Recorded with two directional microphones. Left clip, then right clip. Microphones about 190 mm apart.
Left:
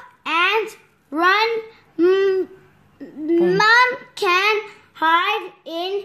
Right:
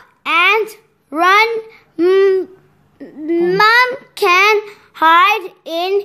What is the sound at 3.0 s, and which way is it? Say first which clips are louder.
Babbling: right 2 dB; 25° right (ahead or behind).